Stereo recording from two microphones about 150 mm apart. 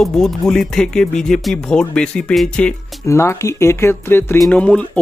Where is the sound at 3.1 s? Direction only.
20° left (ahead or behind).